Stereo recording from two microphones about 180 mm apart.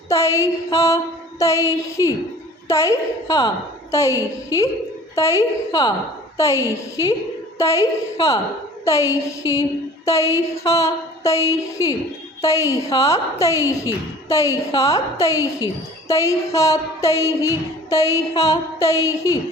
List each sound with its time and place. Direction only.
0.1 s a woman's voice: 15° left (ahead or behind)
7.6 s a woman's voice: 15° left (ahead or behind)